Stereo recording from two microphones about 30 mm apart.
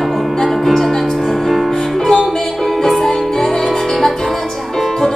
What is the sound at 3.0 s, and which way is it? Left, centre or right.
Music, centre.